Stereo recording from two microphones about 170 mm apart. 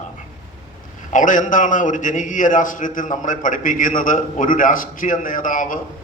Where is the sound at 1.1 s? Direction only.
50° left (ahead or behind).